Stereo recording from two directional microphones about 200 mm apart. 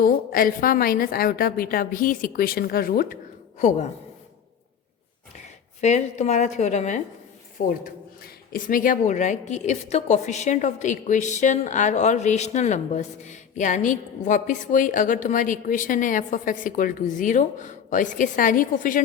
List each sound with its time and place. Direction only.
0.0 s a woman's voice: 45° left (ahead or behind)
5.8 s a woman's voice: 35° left (ahead or behind)